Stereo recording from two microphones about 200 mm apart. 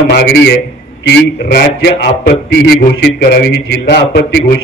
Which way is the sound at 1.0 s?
55° left (ahead or behind).